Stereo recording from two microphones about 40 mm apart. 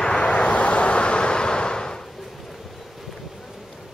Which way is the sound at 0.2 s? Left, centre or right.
Left.